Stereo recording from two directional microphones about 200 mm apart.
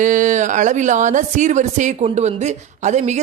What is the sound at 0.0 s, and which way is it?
Speech, 40° right (ahead or behind).